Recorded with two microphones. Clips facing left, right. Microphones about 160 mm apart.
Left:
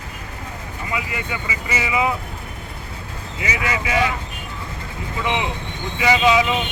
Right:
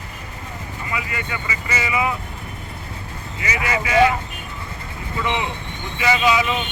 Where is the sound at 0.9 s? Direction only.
20° left (ahead or behind).